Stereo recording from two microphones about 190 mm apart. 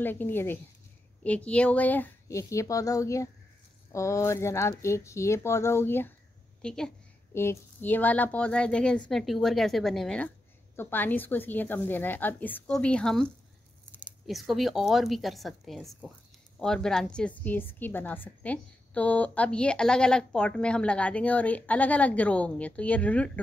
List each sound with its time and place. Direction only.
0.0 s a woman's voice: 10° left (ahead or behind)